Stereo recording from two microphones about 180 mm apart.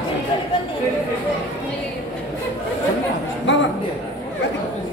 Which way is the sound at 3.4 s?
85° left.